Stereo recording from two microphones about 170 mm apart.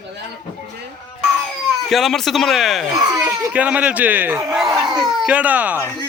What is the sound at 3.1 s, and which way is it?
Speech, 20° right (ahead or behind).